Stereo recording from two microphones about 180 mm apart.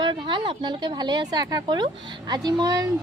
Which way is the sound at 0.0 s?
25° right (ahead or behind).